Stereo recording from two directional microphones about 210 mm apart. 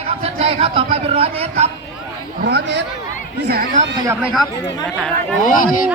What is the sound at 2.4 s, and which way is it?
Speech, 55° right (ahead or behind).